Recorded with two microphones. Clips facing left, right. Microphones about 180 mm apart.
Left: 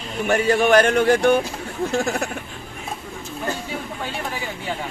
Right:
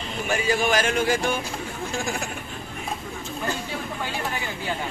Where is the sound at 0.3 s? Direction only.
65° left (ahead or behind).